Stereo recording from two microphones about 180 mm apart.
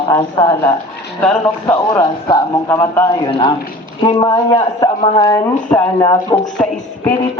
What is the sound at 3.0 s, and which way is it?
Speech, 25° left (ahead or behind).